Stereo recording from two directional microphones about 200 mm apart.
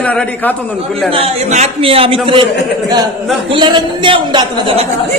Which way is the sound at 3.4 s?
25° right (ahead or behind).